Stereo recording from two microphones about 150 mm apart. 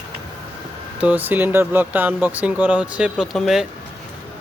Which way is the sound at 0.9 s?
10° right (ahead or behind).